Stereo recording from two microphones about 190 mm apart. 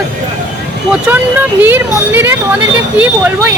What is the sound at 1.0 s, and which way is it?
Speech, 10° right (ahead or behind).